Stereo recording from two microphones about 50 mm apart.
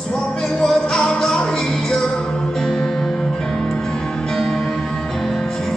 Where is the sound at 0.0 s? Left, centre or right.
Centre.